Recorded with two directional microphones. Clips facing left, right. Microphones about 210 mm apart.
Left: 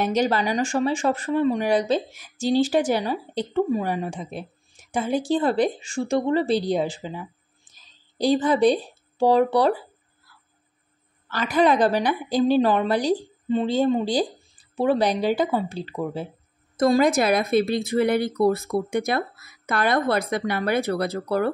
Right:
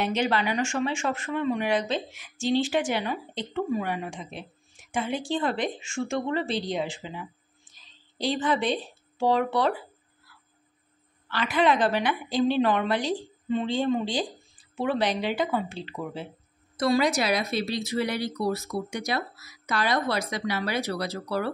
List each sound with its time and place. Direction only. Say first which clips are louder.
0.0 s speech: left 4 dB; 40° left (ahead or behind)
7.7 s a sound: left 4 dB; 40° left (ahead or behind)
9.2 s speech: left 5 dB; 35° left (ahead or behind)
11.2 s speech: left 4 dB; 40° left (ahead or behind)